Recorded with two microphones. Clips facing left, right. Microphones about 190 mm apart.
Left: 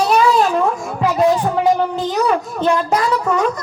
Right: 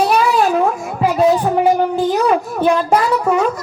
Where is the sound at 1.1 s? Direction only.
5° right (ahead or behind).